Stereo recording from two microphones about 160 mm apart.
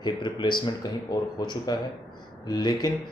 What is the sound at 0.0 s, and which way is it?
Speech, 30° left (ahead or behind).